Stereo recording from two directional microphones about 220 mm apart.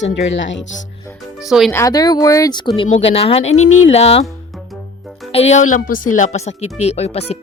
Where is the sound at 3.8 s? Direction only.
30° left (ahead or behind).